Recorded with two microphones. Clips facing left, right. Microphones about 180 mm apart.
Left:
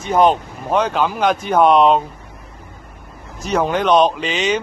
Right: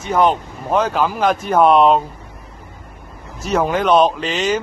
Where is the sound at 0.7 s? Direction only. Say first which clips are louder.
Even; 5° right (ahead or behind).